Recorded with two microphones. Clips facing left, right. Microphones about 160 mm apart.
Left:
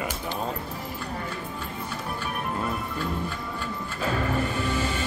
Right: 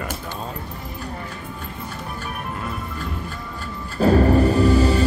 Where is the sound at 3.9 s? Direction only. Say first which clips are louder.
Right 12 dB; 40° right (ahead or behind).